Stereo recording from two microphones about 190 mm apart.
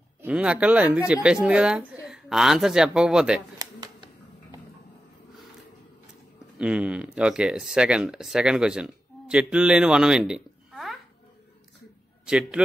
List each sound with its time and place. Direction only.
0.2 s speech: 5° right (ahead or behind)
3.5 s a sound: 20° right (ahead or behind)
6.6 s speech: 5° right (ahead or behind)
12.3 s speech: 5° right (ahead or behind)